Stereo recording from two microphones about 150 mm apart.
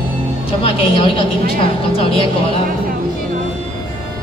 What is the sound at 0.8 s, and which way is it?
Speech, 35° left (ahead or behind).